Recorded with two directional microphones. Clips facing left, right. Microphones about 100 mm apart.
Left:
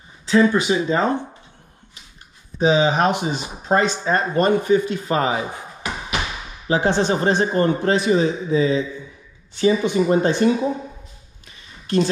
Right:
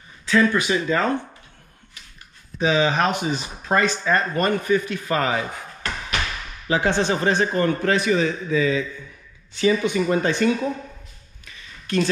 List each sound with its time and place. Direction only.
0.3 s speech: 20° left (ahead or behind)
2.6 s speech: 20° left (ahead or behind)
11.4 s a sound: 20° left (ahead or behind)